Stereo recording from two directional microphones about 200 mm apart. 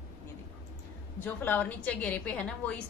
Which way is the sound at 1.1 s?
10° left (ahead or behind).